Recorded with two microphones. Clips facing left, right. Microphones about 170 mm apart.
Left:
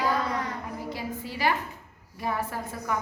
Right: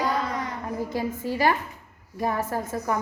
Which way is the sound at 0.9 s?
45° right (ahead or behind).